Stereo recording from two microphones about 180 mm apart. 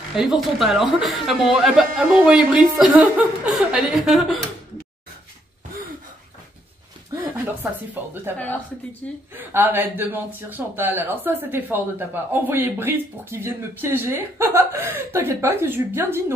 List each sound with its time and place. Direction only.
0.1 s speech: centre (ahead or behind)
7.9 s speech: 10° right (ahead or behind)
9.3 s speech: 10° right (ahead or behind)